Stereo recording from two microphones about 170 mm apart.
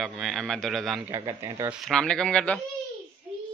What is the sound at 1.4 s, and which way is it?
Speech, 15° right (ahead or behind).